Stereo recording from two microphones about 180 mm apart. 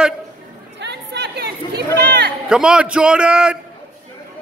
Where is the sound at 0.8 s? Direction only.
70° right (ahead or behind).